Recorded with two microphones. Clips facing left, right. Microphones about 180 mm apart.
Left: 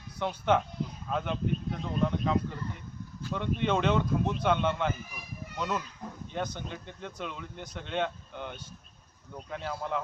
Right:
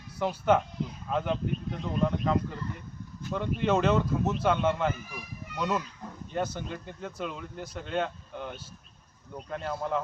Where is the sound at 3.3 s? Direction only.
5° right (ahead or behind).